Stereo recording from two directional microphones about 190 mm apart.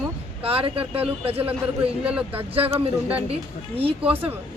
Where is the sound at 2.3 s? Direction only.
30° right (ahead or behind).